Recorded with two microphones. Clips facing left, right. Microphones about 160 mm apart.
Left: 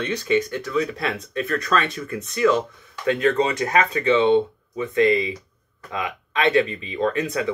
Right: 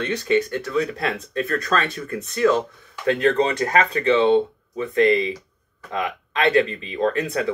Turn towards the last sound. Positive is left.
turn(degrees=-35)  # may be behind; listen again after turning